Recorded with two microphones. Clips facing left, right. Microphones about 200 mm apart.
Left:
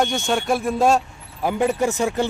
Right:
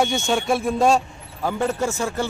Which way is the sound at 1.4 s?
15° left (ahead or behind).